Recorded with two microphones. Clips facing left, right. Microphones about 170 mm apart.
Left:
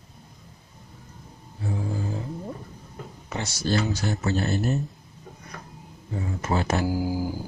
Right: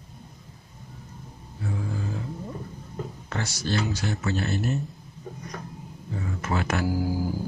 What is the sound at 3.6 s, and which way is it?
Speech, 40° left (ahead or behind).